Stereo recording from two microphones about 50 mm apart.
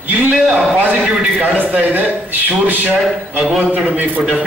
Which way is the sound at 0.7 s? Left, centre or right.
Right.